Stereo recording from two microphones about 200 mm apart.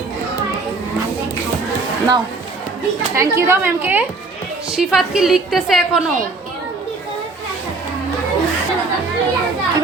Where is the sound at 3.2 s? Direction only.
15° right (ahead or behind).